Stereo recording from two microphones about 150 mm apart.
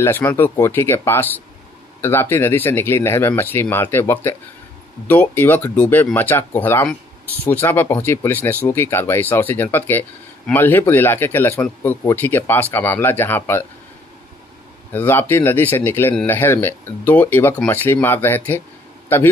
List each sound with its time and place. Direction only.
0.0 s speech: 15° left (ahead or behind)
14.9 s speech: 15° left (ahead or behind)